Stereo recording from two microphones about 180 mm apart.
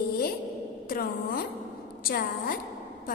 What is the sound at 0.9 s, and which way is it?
A woman's voice, 55° left (ahead or behind).